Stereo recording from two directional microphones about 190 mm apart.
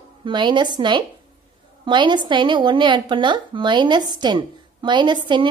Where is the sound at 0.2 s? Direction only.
25° right (ahead or behind).